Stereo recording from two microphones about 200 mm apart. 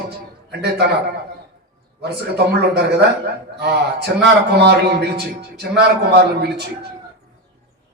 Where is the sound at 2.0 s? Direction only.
55° right (ahead or behind).